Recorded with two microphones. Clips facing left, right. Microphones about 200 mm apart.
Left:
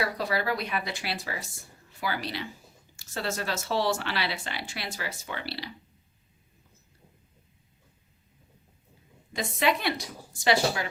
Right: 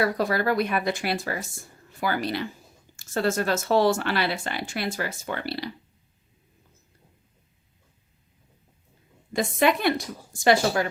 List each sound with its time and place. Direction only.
0.0 s speech: 50° right (ahead or behind)
9.3 s speech: 50° right (ahead or behind)